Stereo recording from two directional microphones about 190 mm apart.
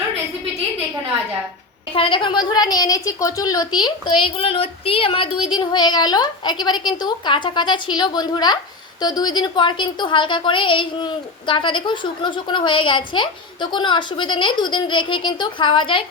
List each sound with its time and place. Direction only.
2.0 s speech: 25° left (ahead or behind)